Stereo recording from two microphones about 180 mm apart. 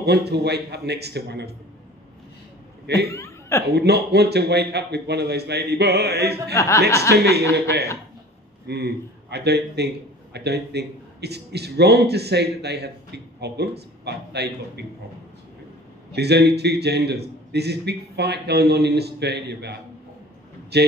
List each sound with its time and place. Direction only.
0.0 s a man's voice: 65° right (ahead or behind)
3.1 s speech: 15° left (ahead or behind)
3.7 s a man's voice: 65° right (ahead or behind)
6.5 s speech: 15° left (ahead or behind)
7.0 s a man's voice: 65° right (ahead or behind)
8.6 s a man's voice: 65° right (ahead or behind)
16.1 s a man's voice: 65° right (ahead or behind)